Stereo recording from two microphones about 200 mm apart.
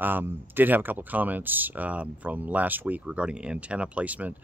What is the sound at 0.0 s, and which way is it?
Speech, 10° right (ahead or behind).